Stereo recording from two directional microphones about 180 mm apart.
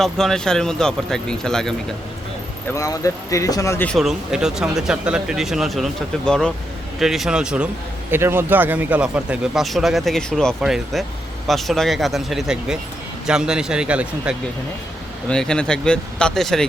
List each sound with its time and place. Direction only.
0.0 s speech: centre (ahead or behind)
2.7 s speech: 20° left (ahead or behind)
3.9 s speech: centre (ahead or behind)
15.3 s speech: 5° left (ahead or behind)